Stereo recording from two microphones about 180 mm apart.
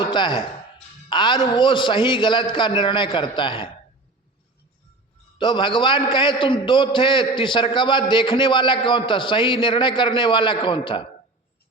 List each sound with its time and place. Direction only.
0.0 s a man's voice: 25° left (ahead or behind)
5.4 s a man's voice: 25° left (ahead or behind)